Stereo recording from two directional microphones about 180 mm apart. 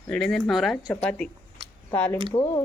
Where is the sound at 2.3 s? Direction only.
25° left (ahead or behind).